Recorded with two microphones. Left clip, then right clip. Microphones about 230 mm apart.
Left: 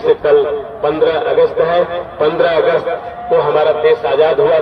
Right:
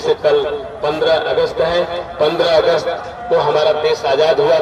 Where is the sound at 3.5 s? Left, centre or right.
Right.